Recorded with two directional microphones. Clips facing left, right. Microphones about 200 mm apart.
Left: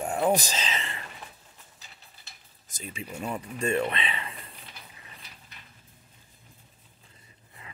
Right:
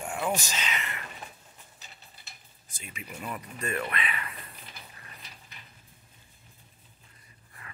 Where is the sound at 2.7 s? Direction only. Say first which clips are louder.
Left 5 dB; 35° left (ahead or behind).